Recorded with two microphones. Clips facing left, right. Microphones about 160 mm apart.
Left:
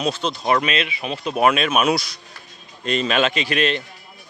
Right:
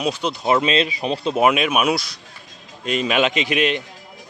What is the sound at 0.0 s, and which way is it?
Speech, 10° right (ahead or behind).